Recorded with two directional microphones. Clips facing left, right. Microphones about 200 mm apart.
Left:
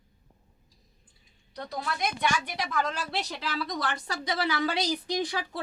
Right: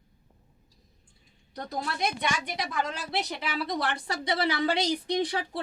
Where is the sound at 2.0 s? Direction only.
25° right (ahead or behind).